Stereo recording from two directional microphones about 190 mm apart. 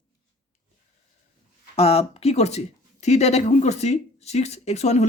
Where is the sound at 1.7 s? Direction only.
30° left (ahead or behind).